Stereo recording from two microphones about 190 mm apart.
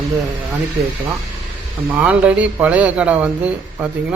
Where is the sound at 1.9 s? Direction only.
5° right (ahead or behind).